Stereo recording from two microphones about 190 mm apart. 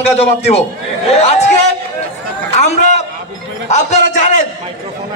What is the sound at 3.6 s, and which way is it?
Speech, 40° left (ahead or behind).